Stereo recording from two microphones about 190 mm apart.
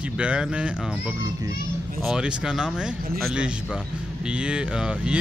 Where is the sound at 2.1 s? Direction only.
5° right (ahead or behind).